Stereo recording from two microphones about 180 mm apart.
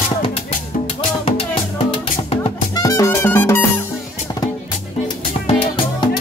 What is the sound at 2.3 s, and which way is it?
Music, 25° left (ahead or behind).